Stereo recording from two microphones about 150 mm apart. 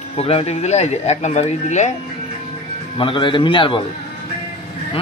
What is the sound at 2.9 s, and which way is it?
Speech, 35° left (ahead or behind).